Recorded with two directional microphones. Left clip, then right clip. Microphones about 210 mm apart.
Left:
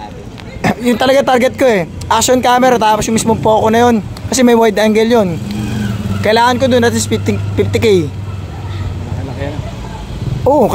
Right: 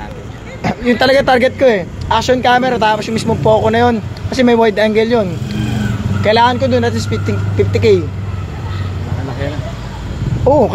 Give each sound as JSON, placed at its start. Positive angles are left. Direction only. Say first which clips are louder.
{"t": 0.6, "sound": "a sound", "louder": "left 1 dB", "side_deg": 35}
{"t": 0.9, "sound": "speech", "louder": "even", "side_deg": 15}
{"t": 1.6, "sound": "speech", "louder": "even", "side_deg": 30}
{"t": 10.5, "sound": "speech", "louder": "even", "side_deg": 35}